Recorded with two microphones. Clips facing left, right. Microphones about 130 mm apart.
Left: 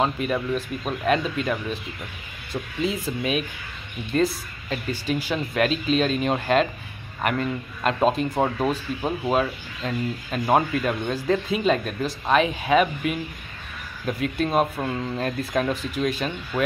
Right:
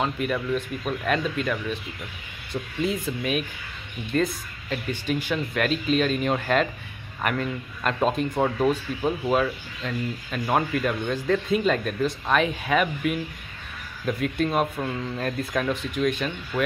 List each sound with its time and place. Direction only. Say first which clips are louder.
0.0 s speech: left 2 dB; 25° left (ahead or behind)
2.8 s speech: left 1 dB; 20° left (ahead or behind)
4.2 s speech: left 3 dB; 30° left (ahead or behind)
11.5 s speech: even; 20° left (ahead or behind)